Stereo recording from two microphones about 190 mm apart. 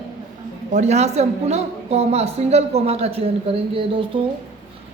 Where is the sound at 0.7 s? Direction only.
35° right (ahead or behind).